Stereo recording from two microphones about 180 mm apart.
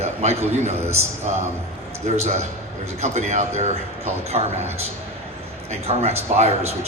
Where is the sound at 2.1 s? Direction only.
40° right (ahead or behind).